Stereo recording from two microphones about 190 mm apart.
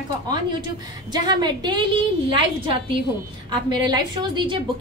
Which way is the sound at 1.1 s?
20° right (ahead or behind).